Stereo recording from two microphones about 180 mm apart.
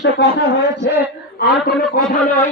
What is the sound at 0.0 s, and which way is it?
Speech, 75° left (ahead or behind).